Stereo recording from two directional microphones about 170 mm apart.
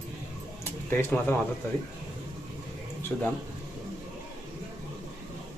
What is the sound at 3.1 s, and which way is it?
Speech, 10° left (ahead or behind).